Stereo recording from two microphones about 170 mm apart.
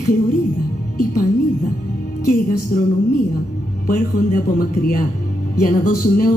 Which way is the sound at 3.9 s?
55° left (ahead or behind).